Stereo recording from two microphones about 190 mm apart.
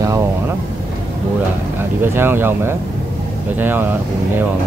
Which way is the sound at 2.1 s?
10° right (ahead or behind).